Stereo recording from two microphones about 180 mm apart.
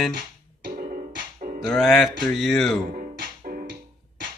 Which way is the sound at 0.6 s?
50° right (ahead or behind).